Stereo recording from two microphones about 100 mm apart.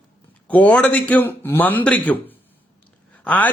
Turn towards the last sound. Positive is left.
turn(degrees=15)  # may be behind; listen again after turning